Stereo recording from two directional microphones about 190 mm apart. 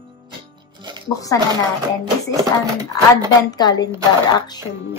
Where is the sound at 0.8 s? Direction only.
25° right (ahead or behind).